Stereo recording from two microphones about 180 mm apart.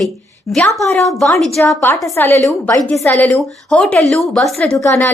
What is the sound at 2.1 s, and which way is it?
Speech, 15° left (ahead or behind).